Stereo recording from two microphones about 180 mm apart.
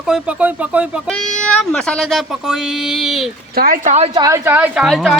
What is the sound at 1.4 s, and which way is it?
Speech, 5° left (ahead or behind).